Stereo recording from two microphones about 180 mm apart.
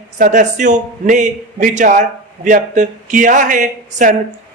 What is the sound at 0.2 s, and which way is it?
Speech, 45° right (ahead or behind).